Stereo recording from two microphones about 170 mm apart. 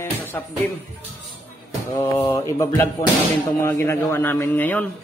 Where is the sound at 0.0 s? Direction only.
10° left (ahead or behind).